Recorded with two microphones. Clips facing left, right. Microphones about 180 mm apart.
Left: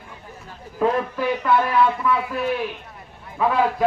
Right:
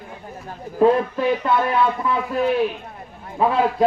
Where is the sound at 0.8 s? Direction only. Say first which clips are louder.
Right 5 dB; 30° right (ahead or behind).